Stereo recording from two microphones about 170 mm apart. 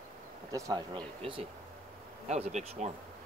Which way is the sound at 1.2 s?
35° right (ahead or behind).